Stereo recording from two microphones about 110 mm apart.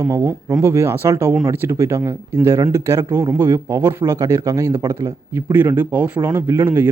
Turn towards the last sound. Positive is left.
turn(degrees=-20)  # may be behind; listen again after turning